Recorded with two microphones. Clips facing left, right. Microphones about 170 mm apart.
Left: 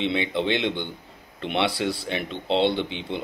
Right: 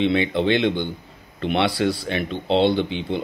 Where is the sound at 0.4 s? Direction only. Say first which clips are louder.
Right 4 dB; 20° left (ahead or behind).